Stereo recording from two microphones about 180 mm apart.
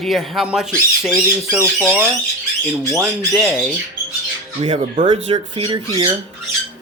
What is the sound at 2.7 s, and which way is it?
Speech, centre (ahead or behind).